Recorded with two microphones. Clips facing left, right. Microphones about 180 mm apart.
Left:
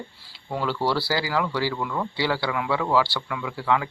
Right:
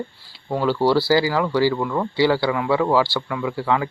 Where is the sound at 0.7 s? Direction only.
25° right (ahead or behind).